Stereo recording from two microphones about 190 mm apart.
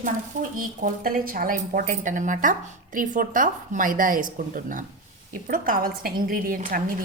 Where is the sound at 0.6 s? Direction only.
45° right (ahead or behind).